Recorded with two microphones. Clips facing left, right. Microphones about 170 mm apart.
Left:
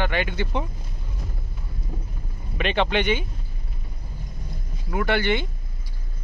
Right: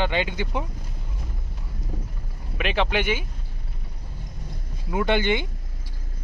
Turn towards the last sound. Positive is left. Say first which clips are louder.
# right 1 dB
turn(degrees=-15)  # may be behind; listen again after turning